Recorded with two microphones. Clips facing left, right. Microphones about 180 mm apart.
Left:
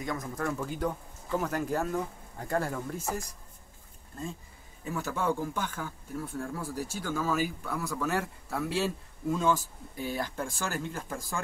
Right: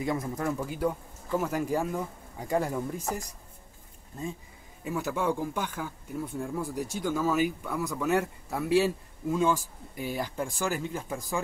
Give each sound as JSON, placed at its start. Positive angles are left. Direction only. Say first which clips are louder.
{"t": 0.0, "sound": "speech", "louder": "right 4 dB", "side_deg": -25}
{"t": 0.5, "sound": "speech", "louder": "right 2 dB", "side_deg": -10}
{"t": 4.8, "sound": "speech", "louder": "right 2 dB", "side_deg": -15}